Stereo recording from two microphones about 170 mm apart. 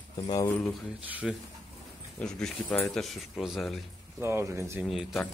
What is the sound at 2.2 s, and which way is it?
Speech, 5° left (ahead or behind).